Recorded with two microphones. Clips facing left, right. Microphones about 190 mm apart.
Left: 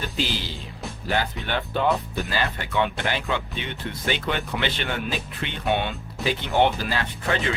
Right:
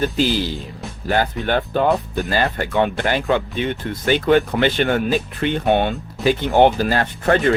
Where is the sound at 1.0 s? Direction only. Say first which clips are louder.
Right 7 dB; 45° right (ahead or behind).